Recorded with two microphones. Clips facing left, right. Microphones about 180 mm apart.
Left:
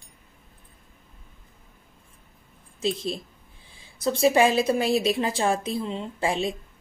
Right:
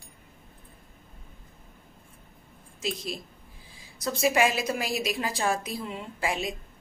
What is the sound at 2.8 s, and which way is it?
A woman's voice, 25° left (ahead or behind).